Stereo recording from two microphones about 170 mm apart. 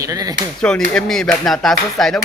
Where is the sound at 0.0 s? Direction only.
20° right (ahead or behind).